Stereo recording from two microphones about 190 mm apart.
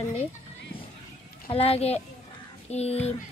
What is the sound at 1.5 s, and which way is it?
Speech, 30° left (ahead or behind).